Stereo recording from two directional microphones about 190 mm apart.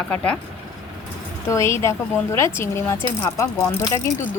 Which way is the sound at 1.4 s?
15° left (ahead or behind).